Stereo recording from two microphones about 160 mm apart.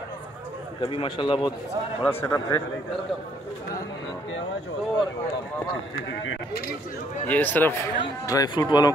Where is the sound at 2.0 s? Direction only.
15° left (ahead or behind).